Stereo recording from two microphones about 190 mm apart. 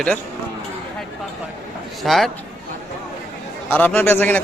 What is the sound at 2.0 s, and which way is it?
Speech, centre (ahead or behind).